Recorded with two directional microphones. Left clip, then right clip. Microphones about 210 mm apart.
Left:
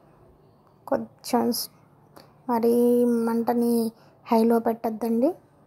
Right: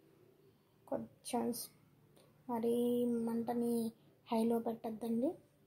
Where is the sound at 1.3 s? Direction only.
25° left (ahead or behind).